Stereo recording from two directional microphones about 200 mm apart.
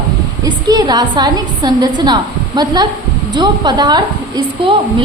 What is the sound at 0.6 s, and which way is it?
A woman's voice, 20° right (ahead or behind).